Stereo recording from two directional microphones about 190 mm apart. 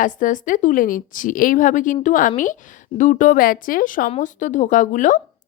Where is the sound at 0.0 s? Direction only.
45° left (ahead or behind).